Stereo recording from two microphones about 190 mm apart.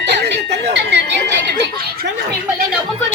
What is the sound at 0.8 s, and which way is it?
Chatter, 65° right (ahead or behind).